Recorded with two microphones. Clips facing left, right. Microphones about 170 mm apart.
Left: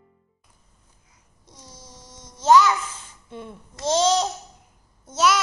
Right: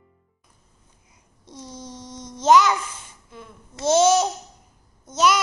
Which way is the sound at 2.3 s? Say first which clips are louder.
Even; 20° right (ahead or behind).